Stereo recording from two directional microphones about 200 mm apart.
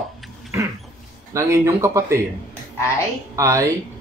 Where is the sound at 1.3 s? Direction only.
15° right (ahead or behind).